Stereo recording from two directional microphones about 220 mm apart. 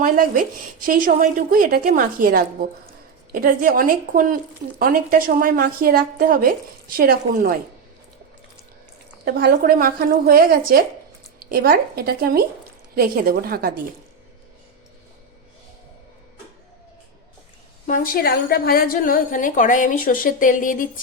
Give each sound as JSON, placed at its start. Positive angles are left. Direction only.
{"t": 0.8, "sound": "a woman's voice", "side_deg": -40}
{"t": 9.2, "sound": "a woman's voice", "side_deg": -45}
{"t": 17.8, "sound": "a woman's voice", "side_deg": 40}